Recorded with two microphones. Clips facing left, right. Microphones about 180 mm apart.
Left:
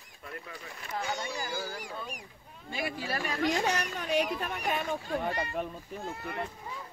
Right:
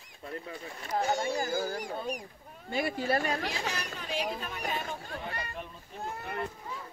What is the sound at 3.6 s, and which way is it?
Speech, 65° left (ahead or behind).